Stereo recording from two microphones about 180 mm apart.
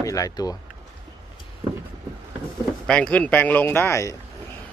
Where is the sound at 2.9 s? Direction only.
5° left (ahead or behind).